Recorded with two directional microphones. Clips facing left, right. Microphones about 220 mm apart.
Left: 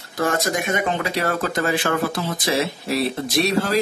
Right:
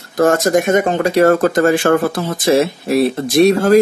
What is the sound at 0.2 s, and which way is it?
Speech, 45° right (ahead or behind).